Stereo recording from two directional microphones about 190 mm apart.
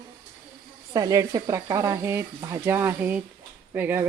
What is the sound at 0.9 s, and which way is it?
Speech, 15° right (ahead or behind).